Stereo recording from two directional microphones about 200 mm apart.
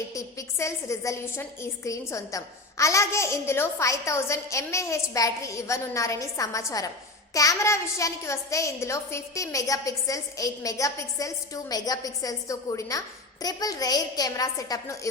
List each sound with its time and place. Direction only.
0.1 s a woman's voice: 15° left (ahead or behind)